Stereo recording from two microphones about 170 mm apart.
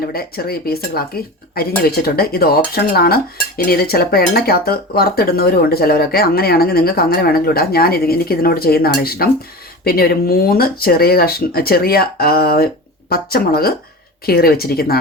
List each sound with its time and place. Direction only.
0.0 s speech: 65° left (ahead or behind)